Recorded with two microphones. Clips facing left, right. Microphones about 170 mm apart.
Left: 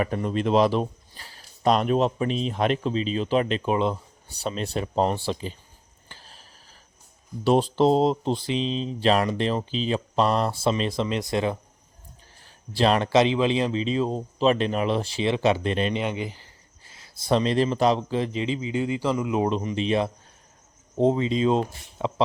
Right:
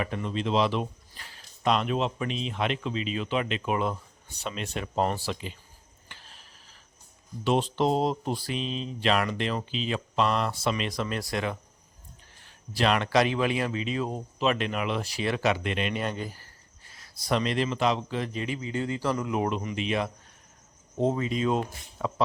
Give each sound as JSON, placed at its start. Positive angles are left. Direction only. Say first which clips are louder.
{"t": 0.0, "sound": "speech", "louder": "left 5 dB", "side_deg": 40}
{"t": 6.1, "sound": "a sound", "louder": "left 3 dB", "side_deg": 35}
{"t": 7.4, "sound": "speech", "louder": "left 5 dB", "side_deg": 35}
{"t": 16.0, "sound": "speech", "louder": "left 4 dB", "side_deg": 15}
{"t": 16.9, "sound": "speech", "louder": "left 5 dB", "side_deg": 25}